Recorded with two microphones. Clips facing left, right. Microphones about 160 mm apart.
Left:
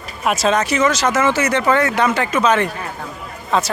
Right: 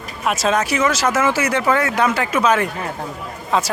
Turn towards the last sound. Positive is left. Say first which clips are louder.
# left 1 dB
turn(degrees=-10)  # may be behind; listen again after turning